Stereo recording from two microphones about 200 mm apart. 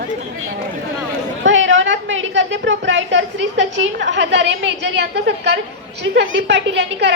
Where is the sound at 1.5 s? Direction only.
70° right (ahead or behind).